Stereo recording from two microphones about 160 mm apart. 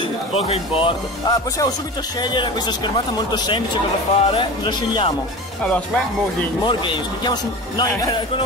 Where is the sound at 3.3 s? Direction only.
30° left (ahead or behind).